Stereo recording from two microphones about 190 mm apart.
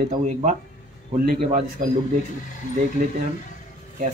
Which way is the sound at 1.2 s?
55° right (ahead or behind).